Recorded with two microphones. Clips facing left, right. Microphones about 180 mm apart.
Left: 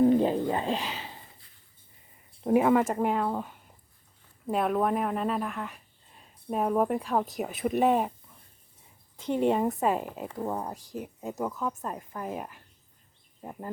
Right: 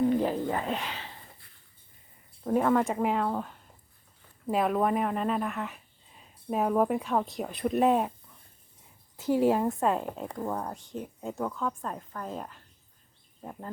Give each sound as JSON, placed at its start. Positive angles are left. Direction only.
{"t": 0.2, "sound": "speech", "side_deg": 20}
{"t": 2.4, "sound": "speech", "side_deg": 10}
{"t": 9.1, "sound": "a woman's voice", "side_deg": -5}